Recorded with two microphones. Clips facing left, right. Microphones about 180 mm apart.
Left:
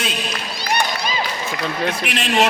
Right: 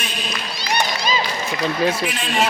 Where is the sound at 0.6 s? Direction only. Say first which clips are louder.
Left 1 dB; 55° left (ahead or behind).